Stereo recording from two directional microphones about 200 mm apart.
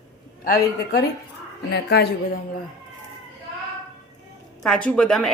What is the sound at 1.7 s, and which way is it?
Speech, 55° left (ahead or behind).